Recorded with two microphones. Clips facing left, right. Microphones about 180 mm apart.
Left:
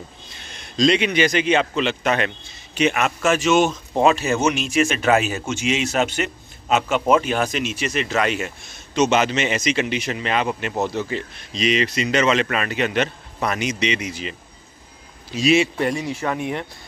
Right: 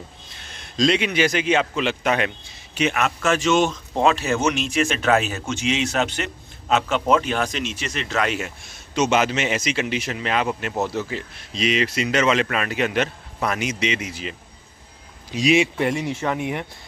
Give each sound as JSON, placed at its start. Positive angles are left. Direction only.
{"t": 0.5, "sound": "a man's voice", "side_deg": 0}
{"t": 15.3, "sound": "speech", "side_deg": -15}